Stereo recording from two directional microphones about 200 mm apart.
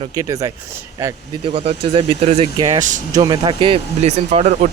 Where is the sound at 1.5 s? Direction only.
25° right (ahead or behind).